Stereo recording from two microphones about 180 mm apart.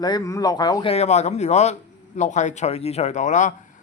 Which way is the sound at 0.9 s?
40° left (ahead or behind).